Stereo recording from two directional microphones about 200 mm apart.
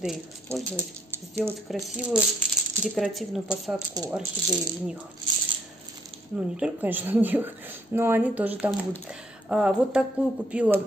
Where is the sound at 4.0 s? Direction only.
20° right (ahead or behind).